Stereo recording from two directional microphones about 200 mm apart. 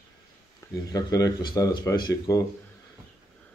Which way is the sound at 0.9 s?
20° left (ahead or behind).